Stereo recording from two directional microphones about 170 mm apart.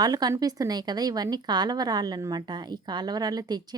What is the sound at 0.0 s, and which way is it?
A woman's voice, 25° right (ahead or behind).